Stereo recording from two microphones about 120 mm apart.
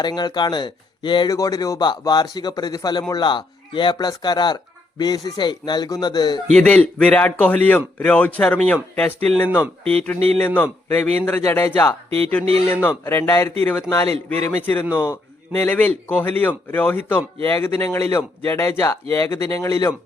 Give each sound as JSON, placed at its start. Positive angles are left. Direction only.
{"t": 0.0, "sound": "speech", "side_deg": 35}
{"t": 6.5, "sound": "speech", "side_deg": 10}
{"t": 10.3, "sound": "speech", "side_deg": 15}
{"t": 11.4, "sound": "a man's voice", "side_deg": 20}